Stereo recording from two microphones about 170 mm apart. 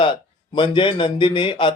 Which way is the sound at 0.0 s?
30° left (ahead or behind).